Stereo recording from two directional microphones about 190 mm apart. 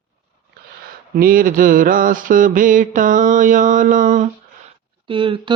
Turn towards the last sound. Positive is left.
turn(degrees=-25)  # may be behind; listen again after turning